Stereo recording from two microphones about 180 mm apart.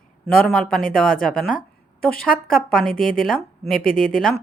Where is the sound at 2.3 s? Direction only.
55° left (ahead or behind).